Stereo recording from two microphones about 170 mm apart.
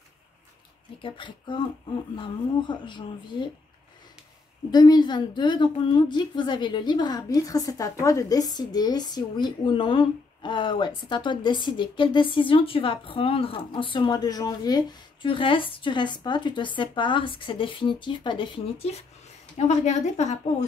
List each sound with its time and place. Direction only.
1.0 s a woman's voice: 30° left (ahead or behind)
2.7 s a woman's voice: 25° left (ahead or behind)
4.6 s a woman's voice: 25° left (ahead or behind); by 20.3 s 40° left (ahead or behind)